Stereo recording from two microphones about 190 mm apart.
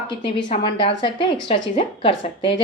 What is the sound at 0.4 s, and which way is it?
A woman's voice, 30° left (ahead or behind).